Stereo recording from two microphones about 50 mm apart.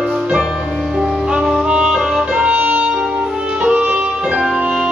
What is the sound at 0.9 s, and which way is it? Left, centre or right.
Music, centre.